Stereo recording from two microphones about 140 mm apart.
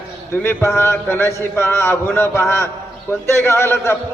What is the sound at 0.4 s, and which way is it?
A man's voice, 15° left (ahead or behind).